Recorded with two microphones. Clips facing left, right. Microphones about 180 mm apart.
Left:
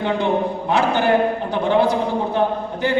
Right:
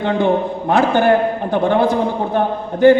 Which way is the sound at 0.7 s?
50° right (ahead or behind).